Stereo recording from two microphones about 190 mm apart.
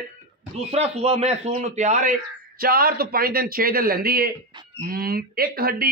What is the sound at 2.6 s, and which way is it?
A man's voice, 50° right (ahead or behind).